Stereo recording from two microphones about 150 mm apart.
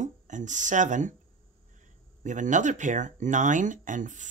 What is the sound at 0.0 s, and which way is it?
Speech, 55° right (ahead or behind).